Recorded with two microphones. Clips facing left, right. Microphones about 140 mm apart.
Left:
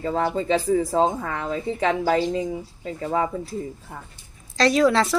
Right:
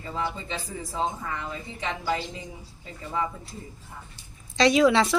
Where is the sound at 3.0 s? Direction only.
65° left (ahead or behind).